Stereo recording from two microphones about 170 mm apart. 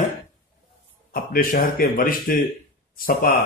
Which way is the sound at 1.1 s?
60° left (ahead or behind).